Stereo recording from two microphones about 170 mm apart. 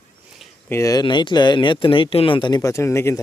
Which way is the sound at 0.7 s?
20° left (ahead or behind).